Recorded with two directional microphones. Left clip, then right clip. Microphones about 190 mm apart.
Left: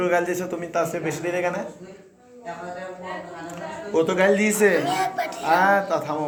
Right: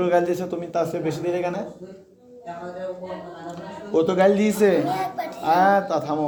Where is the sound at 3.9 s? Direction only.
50° right (ahead or behind).